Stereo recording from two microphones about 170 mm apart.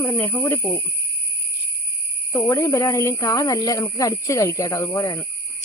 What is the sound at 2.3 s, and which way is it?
Speech, 15° left (ahead or behind).